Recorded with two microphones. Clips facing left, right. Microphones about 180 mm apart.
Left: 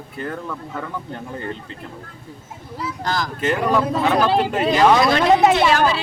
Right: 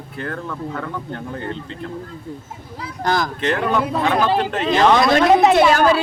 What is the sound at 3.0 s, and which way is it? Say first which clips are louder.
Speech: right 5 dB; 50° right (ahead or behind).